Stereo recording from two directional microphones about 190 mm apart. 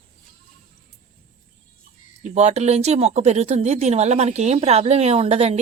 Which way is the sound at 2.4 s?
35° right (ahead or behind).